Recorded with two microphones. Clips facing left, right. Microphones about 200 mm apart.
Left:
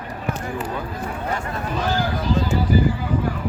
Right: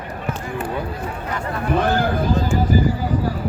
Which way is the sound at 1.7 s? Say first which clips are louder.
Right 5 dB; 55° right (ahead or behind).